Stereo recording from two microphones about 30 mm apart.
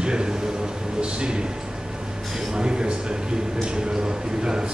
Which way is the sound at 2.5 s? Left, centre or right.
Right.